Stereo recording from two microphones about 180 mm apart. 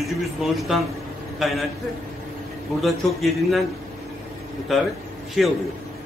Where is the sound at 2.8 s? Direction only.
Centre (ahead or behind).